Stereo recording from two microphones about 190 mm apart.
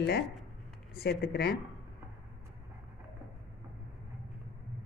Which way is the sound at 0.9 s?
55° left (ahead or behind).